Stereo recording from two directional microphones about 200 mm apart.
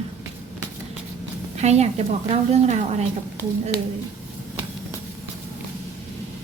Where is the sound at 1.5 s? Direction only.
35° right (ahead or behind).